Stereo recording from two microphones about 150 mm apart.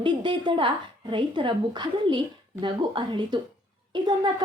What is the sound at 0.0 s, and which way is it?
A woman's voice, 30° right (ahead or behind).